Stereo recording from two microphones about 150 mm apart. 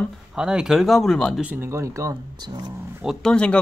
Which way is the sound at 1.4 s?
10° right (ahead or behind).